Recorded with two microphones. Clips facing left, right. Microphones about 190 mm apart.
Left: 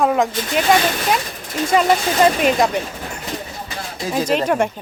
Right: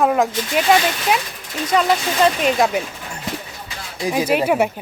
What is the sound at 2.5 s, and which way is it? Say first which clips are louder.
Speech: even; centre (ahead or behind).